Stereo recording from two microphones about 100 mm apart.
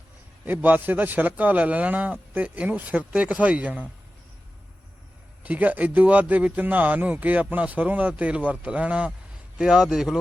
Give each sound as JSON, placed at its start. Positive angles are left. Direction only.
{"t": 0.4, "sound": "speech", "side_deg": -15}
{"t": 5.4, "sound": "a man's voice", "side_deg": -15}